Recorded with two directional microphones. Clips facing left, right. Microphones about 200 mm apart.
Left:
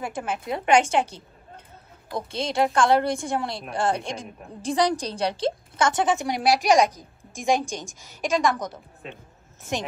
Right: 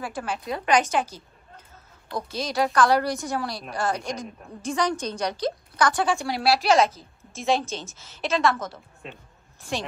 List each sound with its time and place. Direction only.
0.0 s a woman's voice: 20° left (ahead or behind)